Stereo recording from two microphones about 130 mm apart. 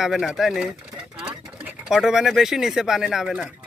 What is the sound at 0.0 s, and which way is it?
Speech, centre (ahead or behind).